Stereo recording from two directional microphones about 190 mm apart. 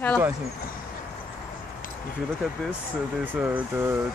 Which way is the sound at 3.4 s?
10° right (ahead or behind).